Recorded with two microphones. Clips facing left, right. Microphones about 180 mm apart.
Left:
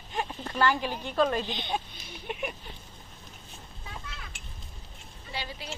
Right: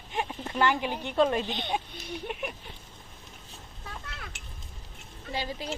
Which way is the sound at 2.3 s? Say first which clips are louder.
Left 4 dB; centre (ahead or behind).